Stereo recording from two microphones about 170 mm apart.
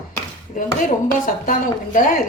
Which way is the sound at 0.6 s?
55° left (ahead or behind).